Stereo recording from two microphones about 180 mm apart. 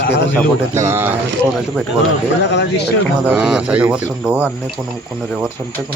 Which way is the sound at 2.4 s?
70° left (ahead or behind).